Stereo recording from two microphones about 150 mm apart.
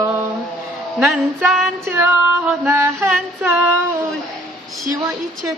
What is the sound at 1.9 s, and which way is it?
Female singing, 10° right (ahead or behind).